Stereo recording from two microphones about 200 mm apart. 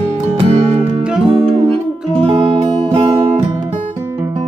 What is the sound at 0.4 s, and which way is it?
Music, 30° right (ahead or behind).